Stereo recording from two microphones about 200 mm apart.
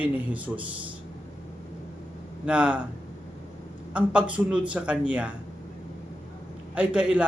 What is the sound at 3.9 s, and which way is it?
A man's voice, 5° right (ahead or behind).